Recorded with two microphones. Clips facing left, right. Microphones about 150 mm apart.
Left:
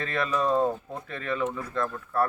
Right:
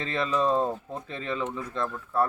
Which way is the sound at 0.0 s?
25° right (ahead or behind).